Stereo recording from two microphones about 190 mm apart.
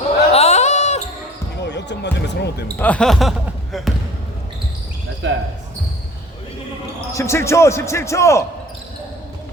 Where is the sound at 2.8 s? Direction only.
5° left (ahead or behind).